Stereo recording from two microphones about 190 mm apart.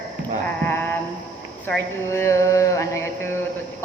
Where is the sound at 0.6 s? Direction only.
10° left (ahead or behind).